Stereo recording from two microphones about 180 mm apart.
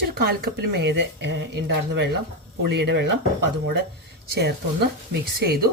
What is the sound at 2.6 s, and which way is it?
Speech, 70° right (ahead or behind).